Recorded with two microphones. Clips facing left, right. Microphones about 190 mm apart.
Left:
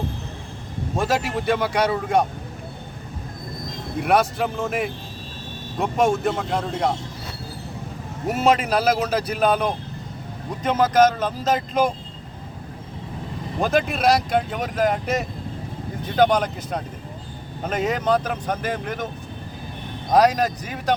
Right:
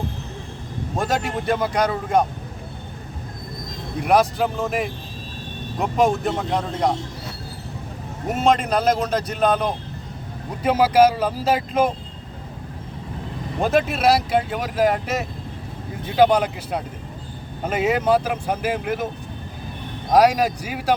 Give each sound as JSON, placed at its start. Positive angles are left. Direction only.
{"t": 0.9, "sound": "speech", "side_deg": 0}
{"t": 4.0, "sound": "speech", "side_deg": 0}
{"t": 8.3, "sound": "speech", "side_deg": 5}
{"t": 10.6, "sound": "speech", "side_deg": -10}
{"t": 13.6, "sound": "speech", "side_deg": 0}
{"t": 20.1, "sound": "speech", "side_deg": -10}